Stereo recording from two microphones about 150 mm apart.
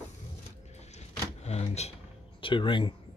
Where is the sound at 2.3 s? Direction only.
35° left (ahead or behind).